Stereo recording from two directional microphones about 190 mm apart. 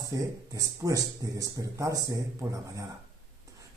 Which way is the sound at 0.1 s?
15° right (ahead or behind).